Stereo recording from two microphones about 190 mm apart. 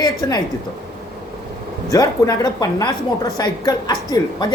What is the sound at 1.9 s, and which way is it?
A woman's voice, 20° left (ahead or behind).